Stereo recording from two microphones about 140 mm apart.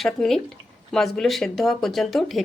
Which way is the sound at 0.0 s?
Centre (ahead or behind).